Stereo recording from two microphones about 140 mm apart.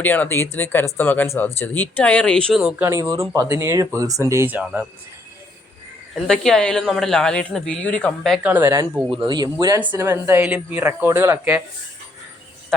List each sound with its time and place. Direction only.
0.0 s speech: 15° left (ahead or behind); by 2.8 s 5° right (ahead or behind)
2.8 s speech: 20° right (ahead or behind)
6.1 s speech: 5° left (ahead or behind)
8.4 s a woman's voice: 15° right (ahead or behind)
9.0 s speech: 35° right (ahead or behind)
9.8 s a woman's voice: 15° right (ahead or behind)